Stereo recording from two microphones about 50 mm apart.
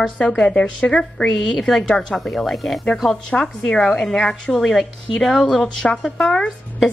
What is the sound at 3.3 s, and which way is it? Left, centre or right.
Speech, left.